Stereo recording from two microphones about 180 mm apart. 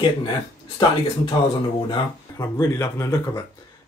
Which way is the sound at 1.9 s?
20° left (ahead or behind).